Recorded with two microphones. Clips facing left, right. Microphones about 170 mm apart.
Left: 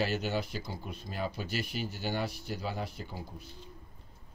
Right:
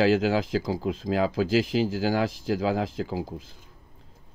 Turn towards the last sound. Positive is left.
turn(degrees=-90)